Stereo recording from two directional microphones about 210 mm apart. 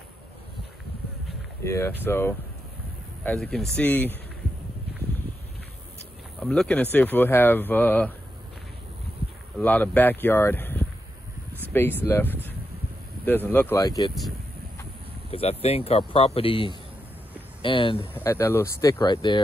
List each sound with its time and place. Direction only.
1.6 s speech: 10° left (ahead or behind)
6.4 s speech: 5° left (ahead or behind)
9.6 s speech: 10° left (ahead or behind)
15.3 s speech: 30° left (ahead or behind)
18.1 s speech: 10° left (ahead or behind)